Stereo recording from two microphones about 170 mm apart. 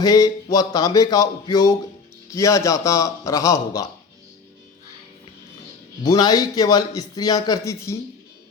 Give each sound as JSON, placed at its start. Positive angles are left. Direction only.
{"t": 0.0, "sound": "a man's voice", "side_deg": 20}
{"t": 6.0, "sound": "a man's voice", "side_deg": 25}